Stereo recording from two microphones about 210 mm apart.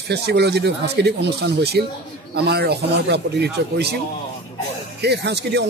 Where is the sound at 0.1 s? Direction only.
50° right (ahead or behind).